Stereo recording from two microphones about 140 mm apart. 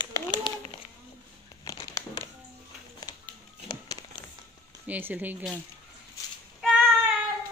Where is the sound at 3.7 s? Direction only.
25° left (ahead or behind).